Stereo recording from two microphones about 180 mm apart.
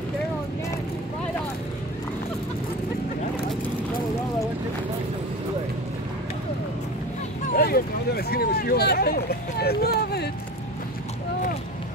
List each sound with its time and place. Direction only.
7.5 s speech: 55° left (ahead or behind)